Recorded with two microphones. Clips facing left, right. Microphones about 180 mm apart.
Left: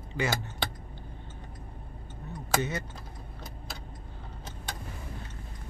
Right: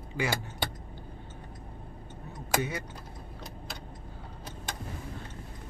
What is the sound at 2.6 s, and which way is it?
Speech, 10° right (ahead or behind).